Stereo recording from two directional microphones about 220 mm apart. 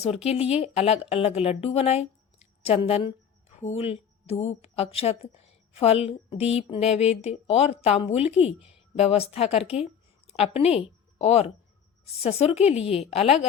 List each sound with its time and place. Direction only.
0.0 s a woman's voice: 30° left (ahead or behind)